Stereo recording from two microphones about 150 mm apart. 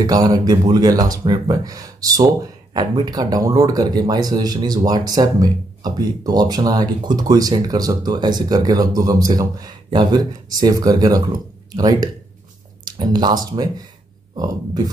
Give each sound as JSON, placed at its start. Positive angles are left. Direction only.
{"t": 0.0, "sound": "speech", "side_deg": -25}